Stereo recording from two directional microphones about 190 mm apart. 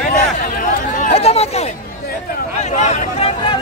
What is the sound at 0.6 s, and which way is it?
Chatter, 45° left (ahead or behind).